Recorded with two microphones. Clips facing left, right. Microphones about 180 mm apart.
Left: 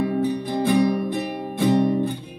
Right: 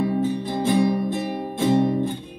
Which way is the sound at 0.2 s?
15° left (ahead or behind).